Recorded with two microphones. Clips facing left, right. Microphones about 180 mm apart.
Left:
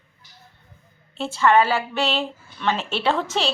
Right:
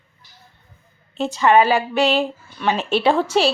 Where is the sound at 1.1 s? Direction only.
15° right (ahead or behind).